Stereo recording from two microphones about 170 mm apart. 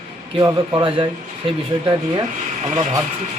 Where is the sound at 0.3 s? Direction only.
25° right (ahead or behind).